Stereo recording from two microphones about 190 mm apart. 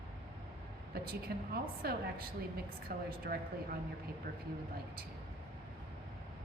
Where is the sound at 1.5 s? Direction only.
55° right (ahead or behind).